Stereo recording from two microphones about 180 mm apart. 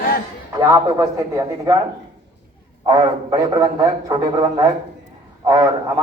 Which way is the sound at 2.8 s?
25° right (ahead or behind).